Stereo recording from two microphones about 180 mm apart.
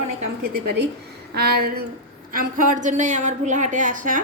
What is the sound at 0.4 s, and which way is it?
A woman's voice, 55° right (ahead or behind).